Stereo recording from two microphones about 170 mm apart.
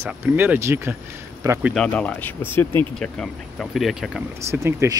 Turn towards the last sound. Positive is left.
turn(degrees=-15)  # may be behind; listen again after turning